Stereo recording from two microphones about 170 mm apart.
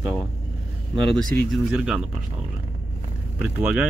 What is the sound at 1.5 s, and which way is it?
Speech, 5° right (ahead or behind).